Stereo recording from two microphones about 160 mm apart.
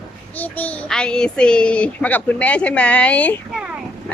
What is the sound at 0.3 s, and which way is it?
A child's voice, 10° left (ahead or behind).